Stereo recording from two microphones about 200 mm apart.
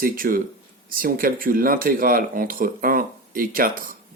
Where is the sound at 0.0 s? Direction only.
45° right (ahead or behind).